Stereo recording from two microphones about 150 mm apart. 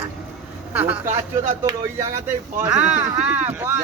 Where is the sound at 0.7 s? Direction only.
10° right (ahead or behind).